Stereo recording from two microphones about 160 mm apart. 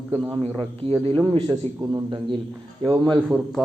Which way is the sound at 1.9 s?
30° right (ahead or behind).